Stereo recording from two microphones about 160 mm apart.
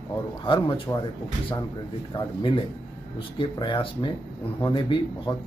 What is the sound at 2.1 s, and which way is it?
Speech, 30° left (ahead or behind).